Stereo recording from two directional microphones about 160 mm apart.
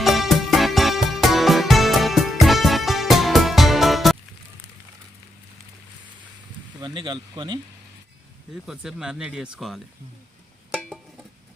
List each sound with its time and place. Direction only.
0.0 s music: centre (ahead or behind)
6.8 s speech: 30° right (ahead or behind)
8.6 s speech: 5° right (ahead or behind)
10.8 s music: 5° right (ahead or behind)